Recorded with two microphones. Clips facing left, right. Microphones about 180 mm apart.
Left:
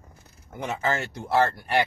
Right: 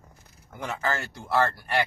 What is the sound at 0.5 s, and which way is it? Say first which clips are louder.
Speech: left 3 dB; 20° left (ahead or behind).